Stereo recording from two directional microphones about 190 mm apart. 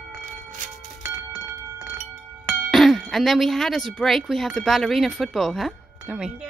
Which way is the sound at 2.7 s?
Centre (ahead or behind).